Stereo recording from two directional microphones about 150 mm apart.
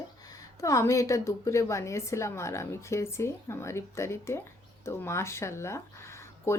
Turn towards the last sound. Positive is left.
turn(degrees=20)  # may be behind; listen again after turning